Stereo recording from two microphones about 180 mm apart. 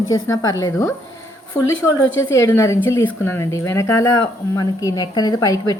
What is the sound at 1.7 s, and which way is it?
Speech, 90° left.